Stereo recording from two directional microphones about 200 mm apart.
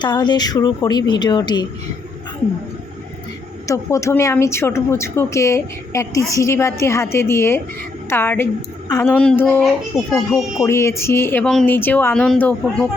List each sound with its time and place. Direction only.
0.0 s a woman's voice: 20° left (ahead or behind)
3.7 s a woman's voice: 15° left (ahead or behind); by 10.4 s centre (ahead or behind)
10.6 s a woman's voice: 15° left (ahead or behind)